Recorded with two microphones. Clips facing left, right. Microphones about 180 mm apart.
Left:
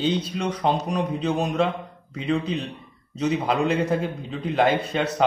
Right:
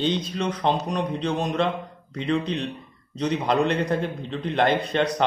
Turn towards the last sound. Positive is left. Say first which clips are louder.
# even
turn(degrees=5)  # may be behind; listen again after turning